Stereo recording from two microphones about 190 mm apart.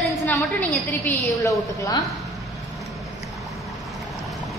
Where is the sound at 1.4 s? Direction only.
15° left (ahead or behind).